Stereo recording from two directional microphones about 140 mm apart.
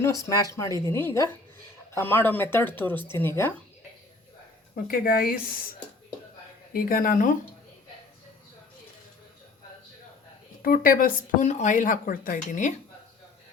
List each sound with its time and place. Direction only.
0.0 s a woman's voice: 25° left (ahead or behind)
4.7 s speech: 90° left
6.7 s speech: 90° left; by 7.3 s 75° left (ahead or behind)
10.6 s speech: 90° left; by 12.7 s 65° left (ahead or behind)